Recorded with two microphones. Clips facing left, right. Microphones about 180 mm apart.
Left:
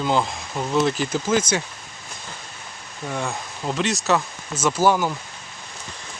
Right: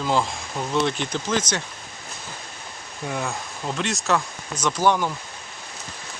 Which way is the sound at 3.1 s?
Centre (ahead or behind).